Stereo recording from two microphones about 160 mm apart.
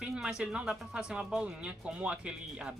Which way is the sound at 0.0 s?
5° right (ahead or behind).